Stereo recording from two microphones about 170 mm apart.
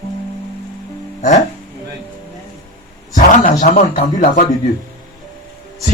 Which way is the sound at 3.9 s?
55° left (ahead or behind).